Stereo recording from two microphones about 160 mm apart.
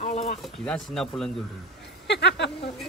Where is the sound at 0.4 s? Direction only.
Centre (ahead or behind).